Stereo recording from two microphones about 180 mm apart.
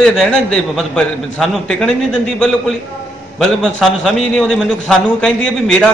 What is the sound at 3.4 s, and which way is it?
A man's voice, centre (ahead or behind).